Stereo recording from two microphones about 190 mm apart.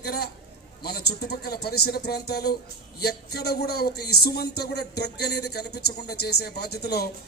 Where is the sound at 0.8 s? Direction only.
55° left (ahead or behind).